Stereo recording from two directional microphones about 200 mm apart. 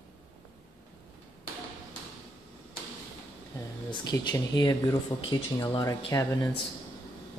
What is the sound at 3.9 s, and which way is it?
Speech, 20° left (ahead or behind).